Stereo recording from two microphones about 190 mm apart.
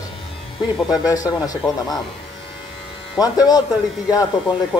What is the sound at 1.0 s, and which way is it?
Speech, 20° left (ahead or behind).